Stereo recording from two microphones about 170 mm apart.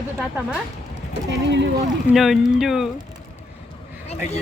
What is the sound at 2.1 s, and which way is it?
Speech, centre (ahead or behind).